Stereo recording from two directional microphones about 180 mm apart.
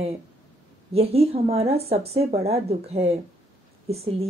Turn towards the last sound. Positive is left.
turn(degrees=-35)  # may be behind; listen again after turning